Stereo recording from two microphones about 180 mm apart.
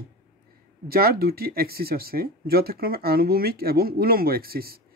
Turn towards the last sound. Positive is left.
turn(degrees=-55)  # may be behind; listen again after turning